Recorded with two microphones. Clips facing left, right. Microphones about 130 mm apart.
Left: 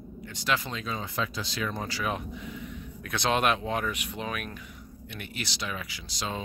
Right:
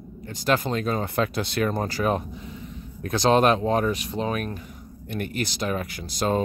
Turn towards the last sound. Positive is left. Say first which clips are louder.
# right 11 dB
turn(degrees=-50)  # may be behind; listen again after turning